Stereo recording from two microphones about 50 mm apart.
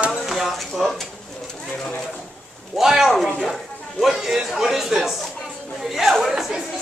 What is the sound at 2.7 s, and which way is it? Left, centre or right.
A child's voice, centre.